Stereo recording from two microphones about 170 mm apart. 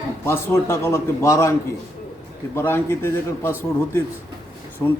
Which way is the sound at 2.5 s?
15° left (ahead or behind).